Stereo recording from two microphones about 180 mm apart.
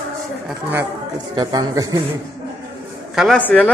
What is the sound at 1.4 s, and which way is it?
Speech, 20° right (ahead or behind).